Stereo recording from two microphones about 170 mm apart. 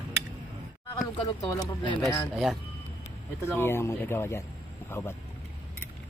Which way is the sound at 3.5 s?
15° left (ahead or behind).